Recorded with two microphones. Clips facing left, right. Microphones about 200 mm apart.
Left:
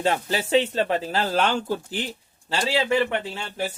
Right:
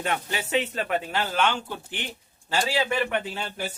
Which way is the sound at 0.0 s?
35° left (ahead or behind).